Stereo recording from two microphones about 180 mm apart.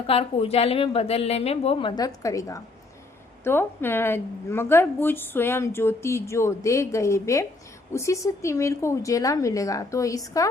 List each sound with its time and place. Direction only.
0.1 s a woman's voice: 35° left (ahead or behind)
2.0 s a woman's voice: 20° left (ahead or behind)